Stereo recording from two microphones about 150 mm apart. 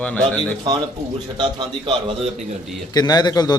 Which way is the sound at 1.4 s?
30° right (ahead or behind).